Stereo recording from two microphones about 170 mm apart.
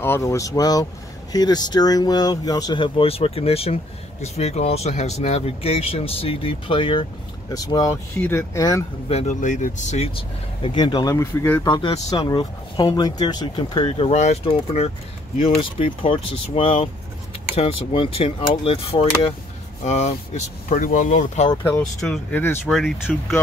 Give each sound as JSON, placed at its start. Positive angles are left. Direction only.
{"t": 0.0, "sound": "speech", "side_deg": 15}
{"t": 9.1, "sound": "speech", "side_deg": 45}
{"t": 11.6, "sound": "speech", "side_deg": 25}
{"t": 21.7, "sound": "speech", "side_deg": 5}